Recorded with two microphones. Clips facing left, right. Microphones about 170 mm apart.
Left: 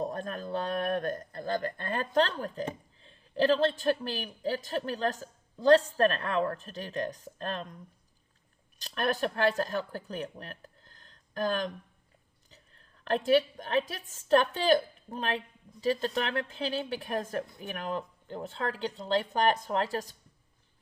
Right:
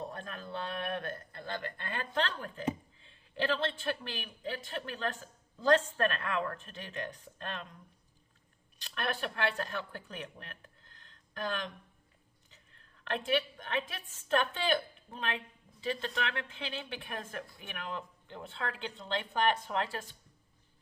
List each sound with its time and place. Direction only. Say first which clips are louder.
0.0 s a man's voice: left 8 dB; 40° left (ahead or behind)
8.8 s a woman's voice: left 6 dB; 40° left (ahead or behind)